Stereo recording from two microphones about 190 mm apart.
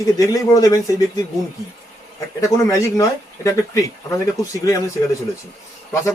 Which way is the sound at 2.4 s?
15° left (ahead or behind).